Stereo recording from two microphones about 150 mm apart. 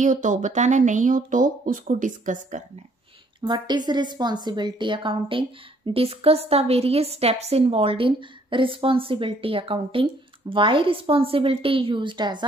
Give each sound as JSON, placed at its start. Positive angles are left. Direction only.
{"t": 0.0, "sound": "speech", "side_deg": -55}
{"t": 3.3, "sound": "a woman's voice", "side_deg": -30}